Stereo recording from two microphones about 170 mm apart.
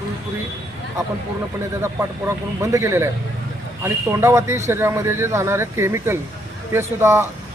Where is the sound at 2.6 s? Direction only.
15° right (ahead or behind).